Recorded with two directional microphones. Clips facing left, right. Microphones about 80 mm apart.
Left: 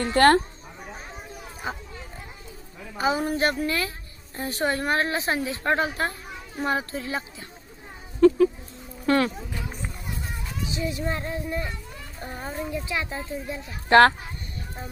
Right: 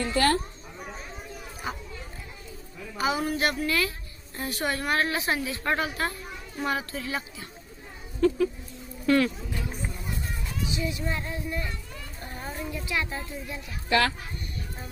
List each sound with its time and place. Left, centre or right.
0.0 s speech: left
3.0 s a woman's voice: left
9.0 s speech: left
10.7 s a woman's voice: left
13.9 s speech: left